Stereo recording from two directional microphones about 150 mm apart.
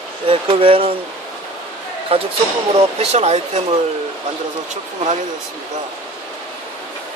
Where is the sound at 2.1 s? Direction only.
40° right (ahead or behind).